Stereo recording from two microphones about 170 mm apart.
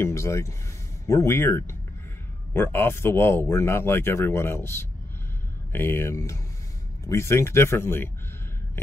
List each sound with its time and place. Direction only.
0.0 s speech: 15° left (ahead or behind)